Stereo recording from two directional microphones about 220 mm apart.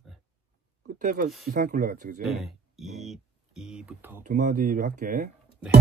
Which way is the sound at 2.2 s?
Centre (ahead or behind).